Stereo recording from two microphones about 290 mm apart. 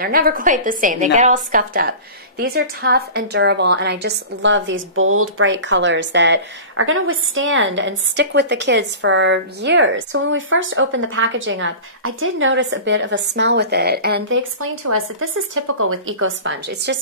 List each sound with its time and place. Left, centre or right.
0.0 s a woman's voice: right
15.5 s a woman's voice: right